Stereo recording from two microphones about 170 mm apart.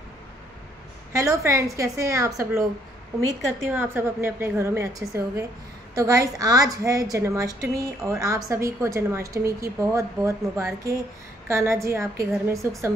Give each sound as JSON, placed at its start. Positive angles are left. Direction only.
{"t": 1.1, "sound": "a woman's voice", "side_deg": -15}
{"t": 3.6, "sound": "a woman's voice", "side_deg": -15}